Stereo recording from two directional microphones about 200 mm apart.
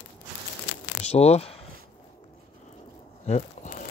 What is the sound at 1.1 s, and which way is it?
Speech, 30° left (ahead or behind).